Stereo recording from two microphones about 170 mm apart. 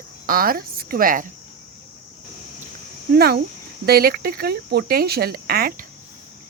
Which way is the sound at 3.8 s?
65° right (ahead or behind).